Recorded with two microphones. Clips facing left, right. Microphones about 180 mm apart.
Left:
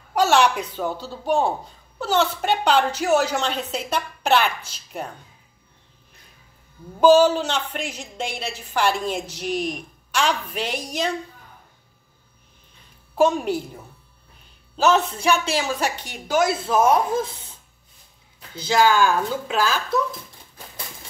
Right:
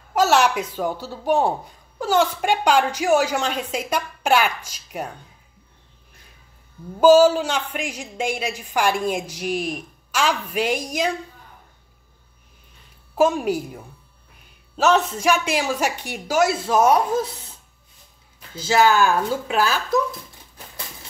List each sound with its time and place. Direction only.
0.1 s a woman's voice: 5° right (ahead or behind)
7.0 s a woman's voice: 5° right (ahead or behind)
13.1 s a woman's voice: 10° right (ahead or behind)
14.8 s a woman's voice: centre (ahead or behind)
18.6 s a woman's voice: 5° right (ahead or behind)